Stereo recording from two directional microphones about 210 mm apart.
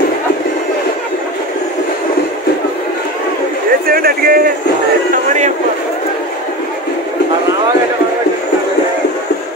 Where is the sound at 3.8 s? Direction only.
45° right (ahead or behind).